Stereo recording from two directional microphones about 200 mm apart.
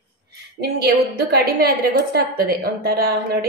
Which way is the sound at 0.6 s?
55° right (ahead or behind).